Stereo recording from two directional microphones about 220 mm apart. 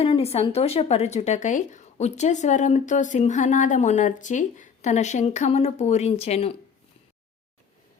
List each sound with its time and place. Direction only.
0.0 s speech: 25° left (ahead or behind)